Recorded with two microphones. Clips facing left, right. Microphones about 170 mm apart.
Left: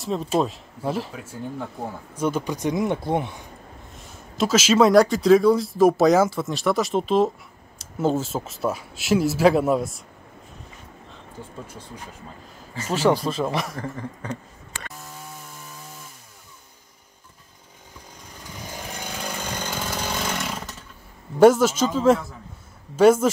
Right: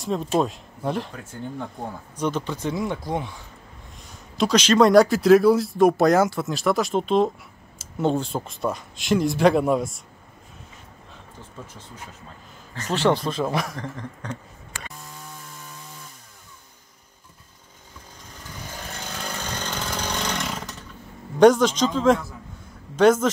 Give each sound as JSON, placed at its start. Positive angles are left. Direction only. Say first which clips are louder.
{"t": 0.0, "sound": "speech", "louder": "even", "side_deg": 0}
{"t": 4.4, "sound": "speech", "louder": "even", "side_deg": 5}
{"t": 12.7, "sound": "speech", "louder": "left 1 dB", "side_deg": 5}
{"t": 18.8, "sound": "chainsaw", "louder": "left 2 dB", "side_deg": 15}
{"t": 21.4, "sound": "speech", "louder": "even", "side_deg": 5}